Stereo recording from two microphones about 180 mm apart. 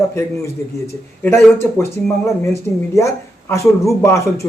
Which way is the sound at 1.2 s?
15° left (ahead or behind).